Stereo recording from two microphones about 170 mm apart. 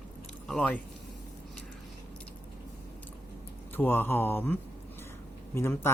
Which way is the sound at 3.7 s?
10° left (ahead or behind).